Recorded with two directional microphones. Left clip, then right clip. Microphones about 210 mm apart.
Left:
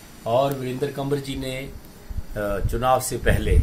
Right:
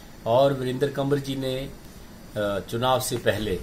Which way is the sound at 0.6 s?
Centre (ahead or behind).